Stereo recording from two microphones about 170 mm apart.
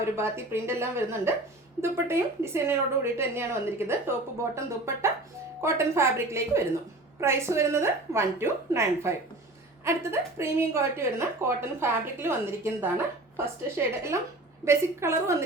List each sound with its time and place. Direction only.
0.0 s a woman's voice: 15° right (ahead or behind)